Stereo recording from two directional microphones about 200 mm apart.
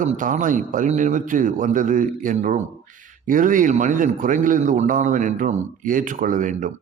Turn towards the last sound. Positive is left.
turn(degrees=-40)  # may be behind; listen again after turning